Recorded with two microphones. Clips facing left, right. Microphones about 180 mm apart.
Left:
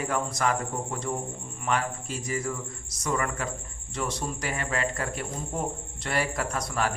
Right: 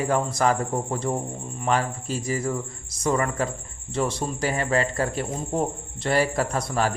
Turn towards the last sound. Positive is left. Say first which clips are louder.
# right 5 dB
turn(degrees=-30)  # may be behind; listen again after turning